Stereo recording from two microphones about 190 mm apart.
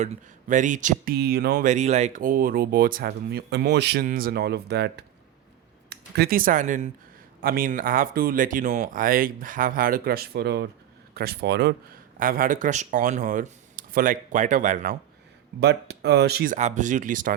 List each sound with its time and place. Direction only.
0.0 s speech: 40° right (ahead or behind)
1.6 s speech: 35° right (ahead or behind); by 4.0 s 60° right (ahead or behind)
4.0 s speech: 50° right (ahead or behind)
12.2 s speech: 45° right (ahead or behind)
15.6 s speech: 60° right (ahead or behind); by 17.3 s 45° right (ahead or behind)